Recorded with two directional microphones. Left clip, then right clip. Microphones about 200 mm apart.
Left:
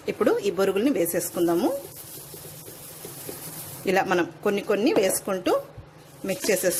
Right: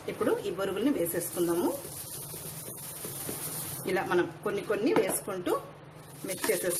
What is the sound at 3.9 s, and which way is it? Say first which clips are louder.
A woman's voice: left 5 dB; 45° left (ahead or behind).